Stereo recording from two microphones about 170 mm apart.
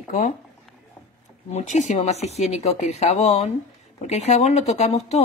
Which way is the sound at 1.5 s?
45° left (ahead or behind).